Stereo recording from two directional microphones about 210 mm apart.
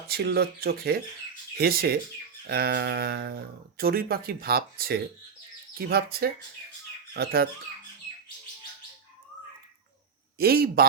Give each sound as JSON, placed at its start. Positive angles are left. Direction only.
{"t": 0.1, "sound": "speech", "side_deg": -50}
{"t": 10.3, "sound": "speech", "side_deg": -45}